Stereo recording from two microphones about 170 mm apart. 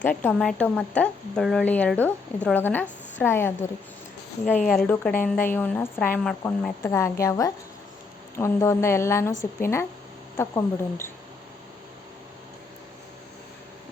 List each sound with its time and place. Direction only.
0.0 s a woman's voice: 10° left (ahead or behind)